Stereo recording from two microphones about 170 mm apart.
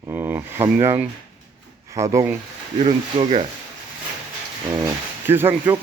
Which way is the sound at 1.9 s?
20° right (ahead or behind).